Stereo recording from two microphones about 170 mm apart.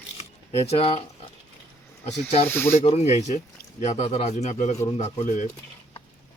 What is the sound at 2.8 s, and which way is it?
Speech, 40° left (ahead or behind).